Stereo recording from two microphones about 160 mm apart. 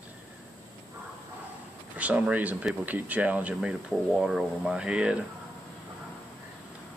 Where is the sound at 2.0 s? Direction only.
10° right (ahead or behind).